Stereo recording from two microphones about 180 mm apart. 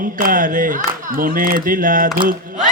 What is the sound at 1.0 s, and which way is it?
Speech, 50° right (ahead or behind).